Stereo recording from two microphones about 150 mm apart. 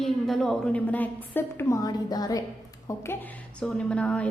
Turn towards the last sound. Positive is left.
turn(degrees=10)  # may be behind; listen again after turning